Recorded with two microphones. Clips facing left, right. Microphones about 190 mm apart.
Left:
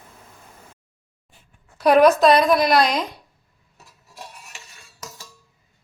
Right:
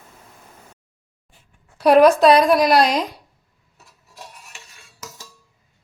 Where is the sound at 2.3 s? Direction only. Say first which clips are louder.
Right 2 dB; 35° right (ahead or behind).